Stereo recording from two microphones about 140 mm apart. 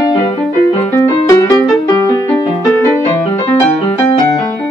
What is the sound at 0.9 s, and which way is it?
Music, 20° left (ahead or behind).